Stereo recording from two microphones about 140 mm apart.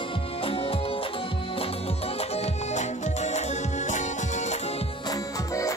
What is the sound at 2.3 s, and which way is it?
Music, 55° left (ahead or behind).